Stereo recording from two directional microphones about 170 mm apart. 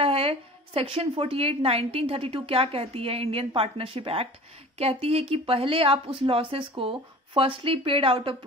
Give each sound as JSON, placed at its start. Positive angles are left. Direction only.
{"t": 0.0, "sound": "a woman's voice", "side_deg": -35}